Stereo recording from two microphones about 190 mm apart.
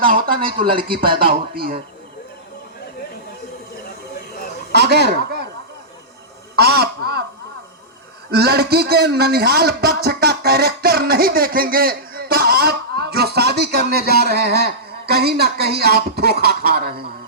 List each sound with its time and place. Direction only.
0.1 s speech: 45° right (ahead or behind)
4.7 s speech: 60° right (ahead or behind)
6.6 s a sound: 55° right (ahead or behind)
8.3 s a man's voice: 55° right (ahead or behind)